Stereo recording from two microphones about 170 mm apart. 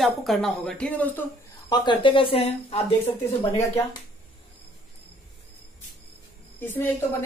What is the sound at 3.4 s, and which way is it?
Speech, 15° left (ahead or behind).